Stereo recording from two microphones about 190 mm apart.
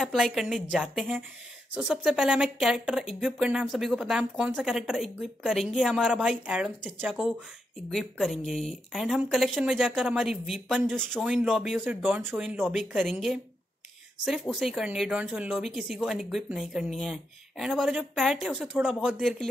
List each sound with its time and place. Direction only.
0.0 s speech: centre (ahead or behind)